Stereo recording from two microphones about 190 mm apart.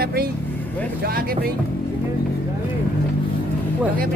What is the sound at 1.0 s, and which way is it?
Speech, 50° right (ahead or behind).